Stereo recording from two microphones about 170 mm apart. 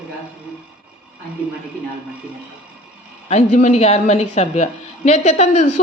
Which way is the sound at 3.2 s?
40° left (ahead or behind).